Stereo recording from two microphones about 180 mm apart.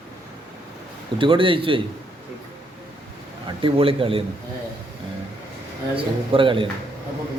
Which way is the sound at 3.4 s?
30° right (ahead or behind).